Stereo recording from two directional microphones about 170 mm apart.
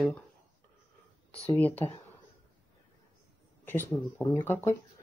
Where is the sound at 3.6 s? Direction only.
10° left (ahead or behind).